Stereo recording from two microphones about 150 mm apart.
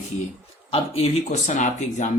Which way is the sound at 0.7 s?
45° left (ahead or behind).